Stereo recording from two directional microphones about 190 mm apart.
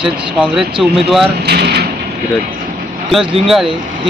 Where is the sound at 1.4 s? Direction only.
60° right (ahead or behind).